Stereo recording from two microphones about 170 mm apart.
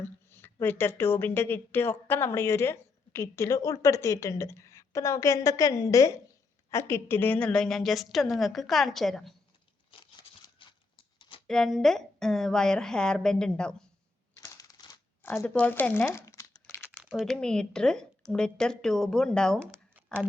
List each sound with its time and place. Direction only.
0.0 s a woman's voice: 15° left (ahead or behind)
9.9 s tearing: 30° left (ahead or behind)
11.4 s a woman's voice: 5° left (ahead or behind)
14.4 s typewriter: 20° left (ahead or behind)
15.2 s speech: 15° left (ahead or behind)
17.0 s a woman's voice: 5° right (ahead or behind)
20.0 s a sound: 10° right (ahead or behind)